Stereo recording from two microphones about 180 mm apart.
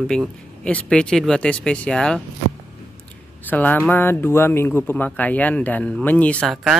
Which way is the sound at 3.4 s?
10° left (ahead or behind).